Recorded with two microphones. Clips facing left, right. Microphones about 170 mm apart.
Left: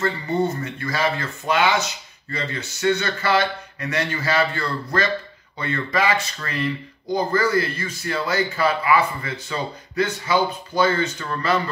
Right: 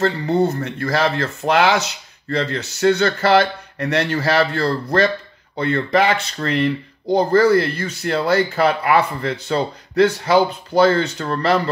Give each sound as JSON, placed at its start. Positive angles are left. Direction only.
{"t": 0.0, "sound": "speech", "side_deg": -75}